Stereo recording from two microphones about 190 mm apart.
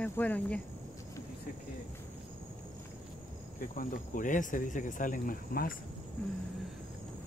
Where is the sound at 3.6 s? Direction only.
45° left (ahead or behind).